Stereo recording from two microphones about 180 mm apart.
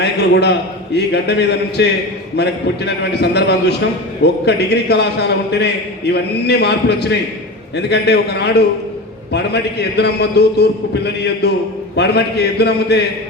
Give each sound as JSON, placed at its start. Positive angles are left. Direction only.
{"t": 0.0, "sound": "a man's voice", "side_deg": 70}